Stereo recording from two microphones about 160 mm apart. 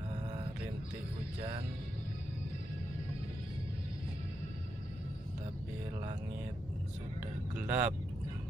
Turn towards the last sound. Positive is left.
turn(degrees=-15)  # may be behind; listen again after turning